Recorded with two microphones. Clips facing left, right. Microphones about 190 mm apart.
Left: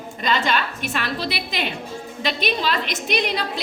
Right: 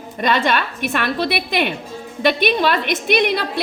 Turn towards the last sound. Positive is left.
turn(degrees=-60)  # may be behind; listen again after turning